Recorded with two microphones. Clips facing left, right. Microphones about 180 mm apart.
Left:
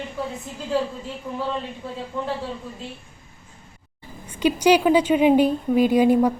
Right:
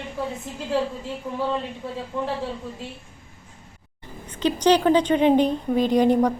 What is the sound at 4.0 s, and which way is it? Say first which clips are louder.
Speech: left 2 dB; 10° left (ahead or behind).